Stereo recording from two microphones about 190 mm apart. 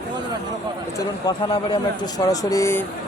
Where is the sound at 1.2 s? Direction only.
25° left (ahead or behind).